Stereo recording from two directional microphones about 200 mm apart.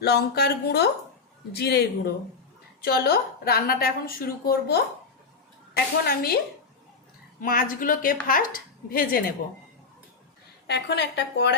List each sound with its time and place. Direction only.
0.0 s a woman's voice: 55° left (ahead or behind)
2.8 s a woman's voice: 50° left (ahead or behind)
7.4 s a woman's voice: 45° left (ahead or behind)
10.7 s a woman's voice: 55° left (ahead or behind)